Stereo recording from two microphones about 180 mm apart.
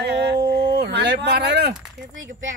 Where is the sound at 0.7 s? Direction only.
65° right (ahead or behind).